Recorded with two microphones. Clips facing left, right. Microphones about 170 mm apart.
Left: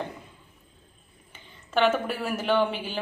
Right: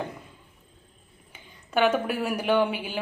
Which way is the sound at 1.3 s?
10° right (ahead or behind).